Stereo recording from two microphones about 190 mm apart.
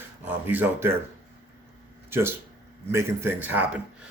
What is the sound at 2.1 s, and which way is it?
Speech, 10° right (ahead or behind).